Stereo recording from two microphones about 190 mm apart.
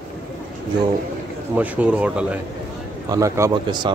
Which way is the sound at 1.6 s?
5° right (ahead or behind).